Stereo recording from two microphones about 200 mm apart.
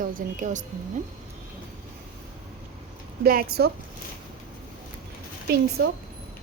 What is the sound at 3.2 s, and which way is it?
Speech, 50° right (ahead or behind).